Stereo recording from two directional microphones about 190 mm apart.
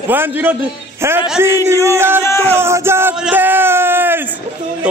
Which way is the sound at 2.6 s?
15° right (ahead or behind).